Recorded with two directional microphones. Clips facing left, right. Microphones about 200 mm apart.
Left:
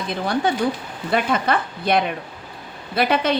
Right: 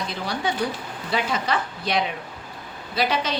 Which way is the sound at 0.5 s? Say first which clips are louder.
Left 5 dB; 55° left (ahead or behind).